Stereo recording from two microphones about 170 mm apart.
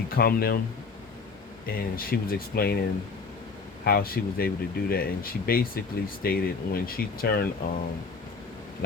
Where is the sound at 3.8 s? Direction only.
60° left (ahead or behind).